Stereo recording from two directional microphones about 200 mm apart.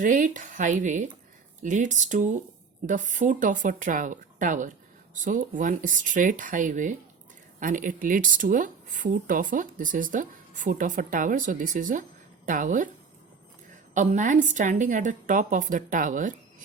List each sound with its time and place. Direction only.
0.0 s speech: 40° right (ahead or behind)
13.9 s speech: 40° right (ahead or behind)